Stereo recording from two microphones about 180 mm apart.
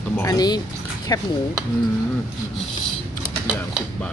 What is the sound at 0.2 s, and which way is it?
Speech, 20° left (ahead or behind).